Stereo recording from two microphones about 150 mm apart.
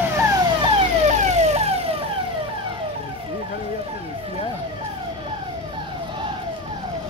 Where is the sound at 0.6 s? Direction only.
45° right (ahead or behind).